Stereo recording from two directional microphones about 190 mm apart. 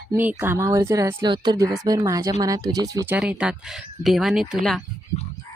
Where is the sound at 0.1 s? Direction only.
10° right (ahead or behind).